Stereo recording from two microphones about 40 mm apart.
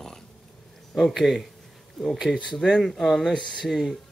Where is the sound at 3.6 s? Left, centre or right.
Centre.